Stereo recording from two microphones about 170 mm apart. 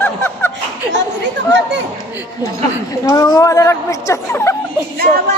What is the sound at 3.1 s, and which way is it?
A woman's voice, 20° left (ahead or behind).